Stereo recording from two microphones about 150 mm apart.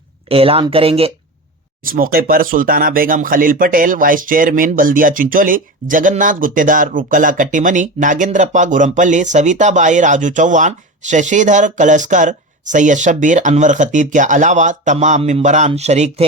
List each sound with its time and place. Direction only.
0.3 s speech: 40° right (ahead or behind)
1.8 s speech: 70° right (ahead or behind); by 16.2 s 50° right (ahead or behind)